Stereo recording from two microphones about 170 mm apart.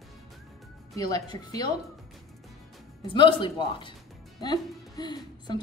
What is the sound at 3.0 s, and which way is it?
A woman's voice, 30° left (ahead or behind).